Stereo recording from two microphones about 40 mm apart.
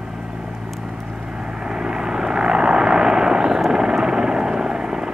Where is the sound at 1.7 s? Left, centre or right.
Centre.